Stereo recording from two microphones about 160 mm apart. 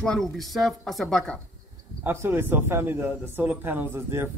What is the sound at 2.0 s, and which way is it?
Speech, 15° right (ahead or behind).